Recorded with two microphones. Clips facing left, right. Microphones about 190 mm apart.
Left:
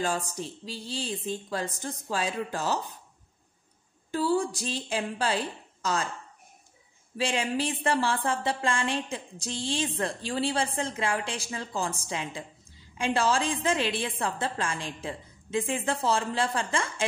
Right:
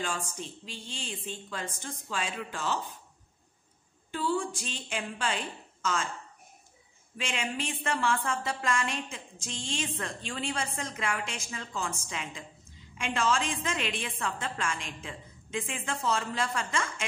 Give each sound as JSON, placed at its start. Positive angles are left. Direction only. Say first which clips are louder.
{"t": 0.0, "sound": "speech", "louder": "left 5 dB", "side_deg": 35}
{"t": 4.1, "sound": "speech", "louder": "left 4 dB", "side_deg": 40}
{"t": 7.2, "sound": "speech", "louder": "left 6 dB", "side_deg": 35}